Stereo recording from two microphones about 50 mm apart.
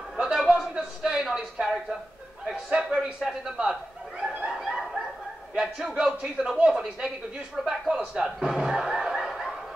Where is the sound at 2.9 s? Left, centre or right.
Centre.